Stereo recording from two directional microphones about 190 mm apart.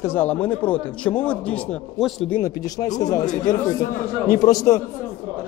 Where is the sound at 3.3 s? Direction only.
40° left (ahead or behind).